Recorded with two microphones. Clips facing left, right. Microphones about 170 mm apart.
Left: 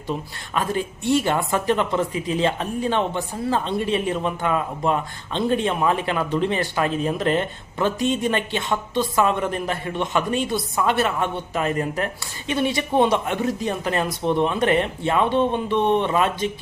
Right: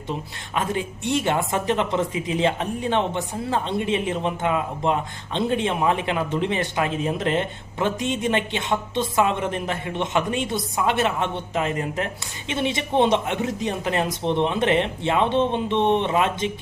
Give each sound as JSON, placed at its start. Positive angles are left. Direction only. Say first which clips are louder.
{"t": 0.5, "sound": "a woman's voice", "louder": "left 1 dB", "side_deg": -20}